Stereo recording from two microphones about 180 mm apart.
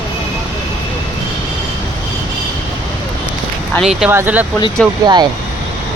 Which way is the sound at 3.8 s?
5° right (ahead or behind).